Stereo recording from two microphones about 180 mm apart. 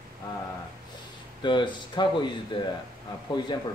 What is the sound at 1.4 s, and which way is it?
Speech, 25° left (ahead or behind).